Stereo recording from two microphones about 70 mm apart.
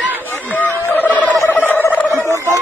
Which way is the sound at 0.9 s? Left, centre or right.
Left.